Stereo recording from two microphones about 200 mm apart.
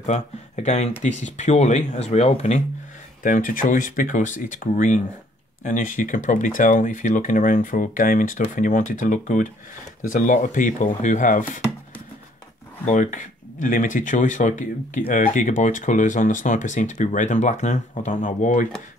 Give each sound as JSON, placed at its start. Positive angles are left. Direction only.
{"t": 0.0, "sound": "speech", "side_deg": 35}
{"t": 12.8, "sound": "speech", "side_deg": 35}